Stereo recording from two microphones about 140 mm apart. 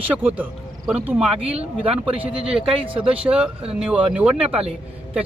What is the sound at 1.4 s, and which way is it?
Speech, 45° right (ahead or behind).